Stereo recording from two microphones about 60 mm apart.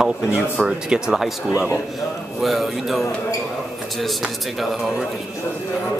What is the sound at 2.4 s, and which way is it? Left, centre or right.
Speech, centre.